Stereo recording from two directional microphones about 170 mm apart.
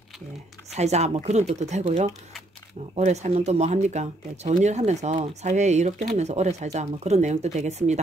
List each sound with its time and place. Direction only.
0.7 s speech: 40° right (ahead or behind)